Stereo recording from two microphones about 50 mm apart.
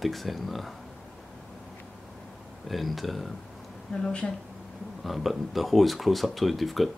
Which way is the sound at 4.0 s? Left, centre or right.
Centre.